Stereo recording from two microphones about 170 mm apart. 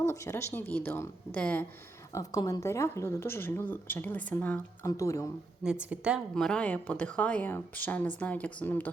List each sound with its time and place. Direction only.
0.0 s speech: 15° left (ahead or behind)
2.1 s speech: 20° left (ahead or behind)
5.9 s a woman's voice: 5° right (ahead or behind)
6.3 s speech: 5° left (ahead or behind)